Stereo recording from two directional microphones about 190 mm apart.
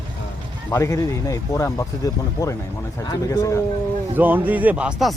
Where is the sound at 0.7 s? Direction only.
15° left (ahead or behind).